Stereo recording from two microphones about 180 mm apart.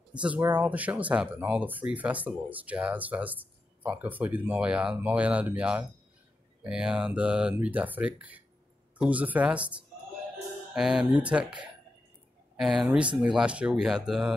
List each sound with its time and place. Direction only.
0.2 s speech: 10° right (ahead or behind)